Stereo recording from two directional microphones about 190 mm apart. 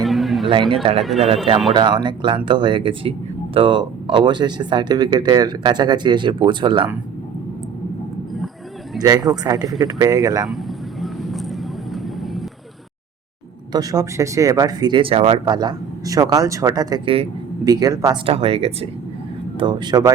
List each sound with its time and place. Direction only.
0.0 s a sound: centre (ahead or behind)
0.7 s speech: 30° right (ahead or behind)
9.0 s speech: 20° right (ahead or behind)
10.4 s vehicle: centre (ahead or behind)
13.7 s speech: 20° right (ahead or behind)
18.3 s speech: 30° right (ahead or behind)